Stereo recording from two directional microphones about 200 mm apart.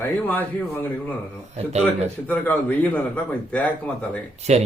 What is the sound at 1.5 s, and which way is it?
Speech, 30° right (ahead or behind).